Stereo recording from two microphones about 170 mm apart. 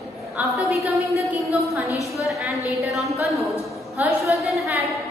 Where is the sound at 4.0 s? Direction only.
15° right (ahead or behind).